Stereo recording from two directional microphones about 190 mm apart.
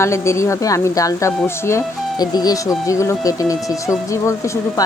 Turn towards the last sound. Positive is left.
turn(degrees=15)  # may be behind; listen again after turning